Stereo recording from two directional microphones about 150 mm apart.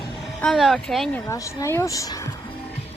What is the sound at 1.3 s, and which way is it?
Speech, 20° left (ahead or behind).